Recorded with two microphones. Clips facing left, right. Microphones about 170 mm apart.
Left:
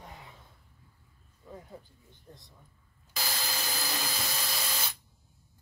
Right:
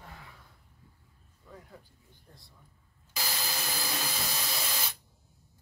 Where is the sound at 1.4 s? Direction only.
20° left (ahead or behind).